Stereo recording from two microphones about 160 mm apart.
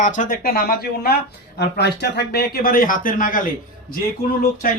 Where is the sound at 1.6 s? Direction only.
90° left; by 3.4 s 60° left (ahead or behind).